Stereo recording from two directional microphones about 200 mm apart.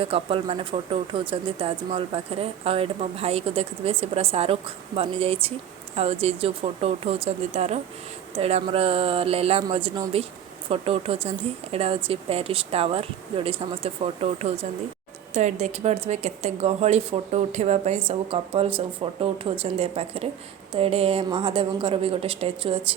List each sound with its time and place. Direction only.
0.0 s speech: 25° right (ahead or behind)